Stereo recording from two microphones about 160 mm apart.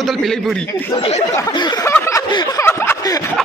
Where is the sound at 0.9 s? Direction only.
35° left (ahead or behind).